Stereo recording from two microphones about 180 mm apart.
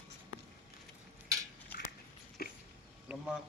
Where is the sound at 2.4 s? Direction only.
55° left (ahead or behind).